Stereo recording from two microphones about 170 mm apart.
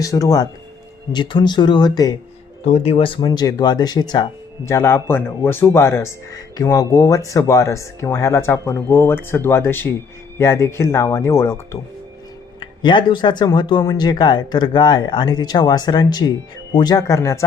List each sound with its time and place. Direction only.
0.0 s speech: 20° left (ahead or behind)
2.6 s speech: 40° left (ahead or behind); by 11.8 s 15° left (ahead or behind)
12.5 s speech: 25° left (ahead or behind)